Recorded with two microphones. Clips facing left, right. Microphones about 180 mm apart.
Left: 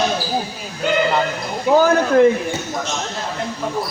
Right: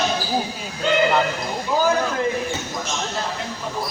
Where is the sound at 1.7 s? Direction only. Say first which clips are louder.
Left 9 dB; 75° left (ahead or behind).